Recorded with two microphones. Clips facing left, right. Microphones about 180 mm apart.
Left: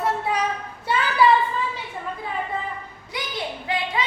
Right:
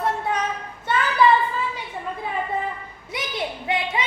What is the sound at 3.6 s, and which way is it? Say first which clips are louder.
Speech: even; 20° right (ahead or behind).